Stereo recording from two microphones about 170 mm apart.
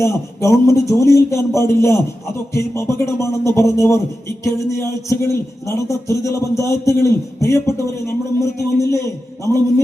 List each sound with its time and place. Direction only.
0.0 s a man's voice: 15° left (ahead or behind)